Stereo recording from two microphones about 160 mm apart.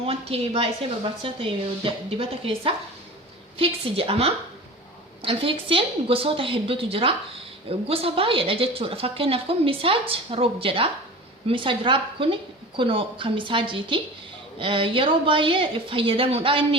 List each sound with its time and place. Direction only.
0.0 s a woman's voice: 35° right (ahead or behind)